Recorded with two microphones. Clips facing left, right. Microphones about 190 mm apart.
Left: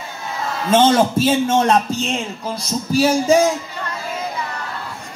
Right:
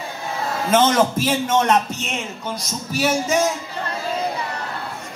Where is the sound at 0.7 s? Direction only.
30° left (ahead or behind).